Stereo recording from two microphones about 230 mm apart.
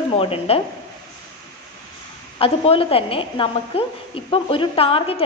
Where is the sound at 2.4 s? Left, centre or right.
Left.